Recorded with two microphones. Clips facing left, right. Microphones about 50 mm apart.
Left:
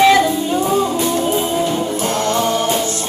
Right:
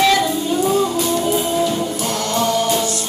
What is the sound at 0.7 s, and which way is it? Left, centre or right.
Music, left.